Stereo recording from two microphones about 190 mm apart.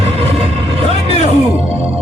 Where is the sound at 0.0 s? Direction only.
30° right (ahead or behind).